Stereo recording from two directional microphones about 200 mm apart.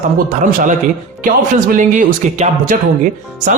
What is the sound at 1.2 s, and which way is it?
Speech, 40° right (ahead or behind).